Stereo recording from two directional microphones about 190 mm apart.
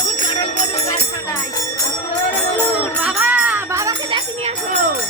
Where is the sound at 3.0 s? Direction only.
10° right (ahead or behind).